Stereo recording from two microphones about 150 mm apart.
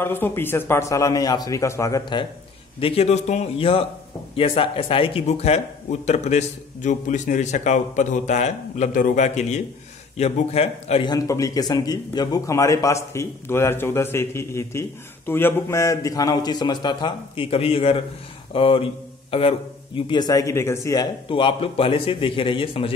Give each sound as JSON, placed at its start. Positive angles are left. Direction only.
{"t": 0.0, "sound": "speech", "side_deg": 15}
{"t": 2.8, "sound": "a man's voice", "side_deg": 40}
{"t": 11.1, "sound": "a man's voice", "side_deg": 20}
{"t": 20.1, "sound": "speech", "side_deg": 25}
{"t": 21.3, "sound": "a man's voice", "side_deg": 35}